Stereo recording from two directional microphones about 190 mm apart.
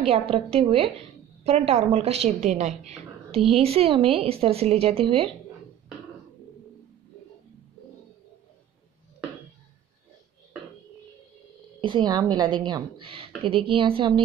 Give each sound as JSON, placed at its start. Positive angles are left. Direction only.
{"t": 0.0, "sound": "a woman's voice", "side_deg": -30}
{"t": 11.8, "sound": "a woman's voice", "side_deg": -25}